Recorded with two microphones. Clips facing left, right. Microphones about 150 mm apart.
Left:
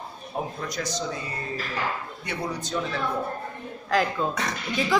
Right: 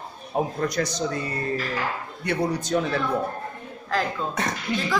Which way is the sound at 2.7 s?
55° right (ahead or behind).